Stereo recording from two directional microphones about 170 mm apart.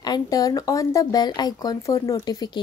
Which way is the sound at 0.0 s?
20° left (ahead or behind).